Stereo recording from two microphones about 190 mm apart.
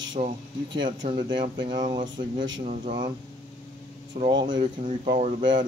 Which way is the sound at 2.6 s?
40° right (ahead or behind).